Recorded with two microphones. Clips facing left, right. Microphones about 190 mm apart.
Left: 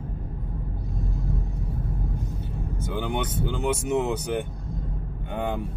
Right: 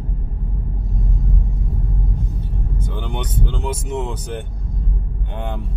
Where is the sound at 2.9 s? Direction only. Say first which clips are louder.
Left 3 dB; 10° left (ahead or behind).